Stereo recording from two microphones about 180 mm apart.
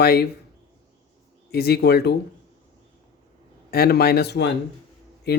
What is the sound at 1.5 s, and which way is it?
Speech, 60° left (ahead or behind).